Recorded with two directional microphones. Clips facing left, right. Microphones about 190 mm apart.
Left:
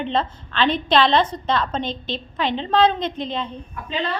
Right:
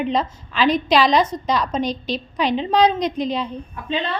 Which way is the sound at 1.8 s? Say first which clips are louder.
Right 4 dB; 25° left (ahead or behind).